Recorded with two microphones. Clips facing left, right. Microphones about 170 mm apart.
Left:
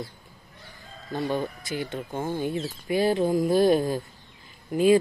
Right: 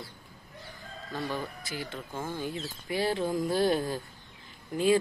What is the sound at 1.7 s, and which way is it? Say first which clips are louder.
Speech: left 7 dB; 20° left (ahead or behind).